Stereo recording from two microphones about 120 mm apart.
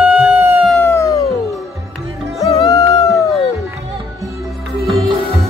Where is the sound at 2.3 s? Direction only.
60° left (ahead or behind).